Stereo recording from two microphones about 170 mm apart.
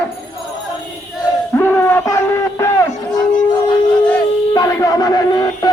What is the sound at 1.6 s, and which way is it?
Speech, 10° left (ahead or behind).